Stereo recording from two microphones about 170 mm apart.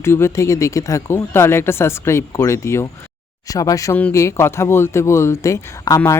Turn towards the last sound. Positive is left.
turn(degrees=20)  # may be behind; listen again after turning